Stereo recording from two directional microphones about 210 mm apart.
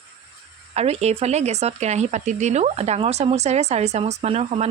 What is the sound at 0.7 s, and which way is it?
Speech, 30° right (ahead or behind).